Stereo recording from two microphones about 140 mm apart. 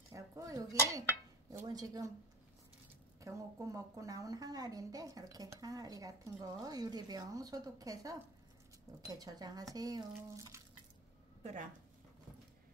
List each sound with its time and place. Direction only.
0.1 s dishes: 25° right (ahead or behind)
1.5 s a woman's voice: 25° right (ahead or behind)
3.2 s a woman's voice: 20° right (ahead or behind)